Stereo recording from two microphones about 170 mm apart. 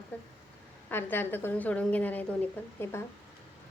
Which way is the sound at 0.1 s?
10° left (ahead or behind).